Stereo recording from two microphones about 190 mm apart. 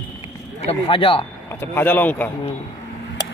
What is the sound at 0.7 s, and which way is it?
Speech, 30° left (ahead or behind).